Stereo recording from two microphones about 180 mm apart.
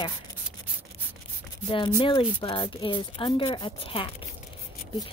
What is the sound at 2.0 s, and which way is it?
Speech, 30° left (ahead or behind).